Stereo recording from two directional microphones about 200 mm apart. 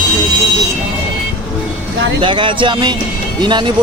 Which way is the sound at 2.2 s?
25° right (ahead or behind).